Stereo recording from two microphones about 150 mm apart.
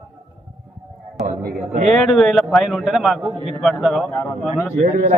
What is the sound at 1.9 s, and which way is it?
A man's voice, centre (ahead or behind).